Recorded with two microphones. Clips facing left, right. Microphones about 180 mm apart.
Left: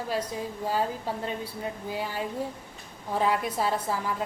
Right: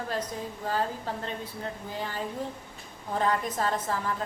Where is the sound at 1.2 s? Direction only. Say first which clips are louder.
Left 2 dB; 10° left (ahead or behind).